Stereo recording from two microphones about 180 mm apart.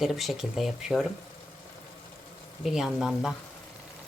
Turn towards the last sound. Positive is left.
turn(degrees=0)  # may be behind; listen again after turning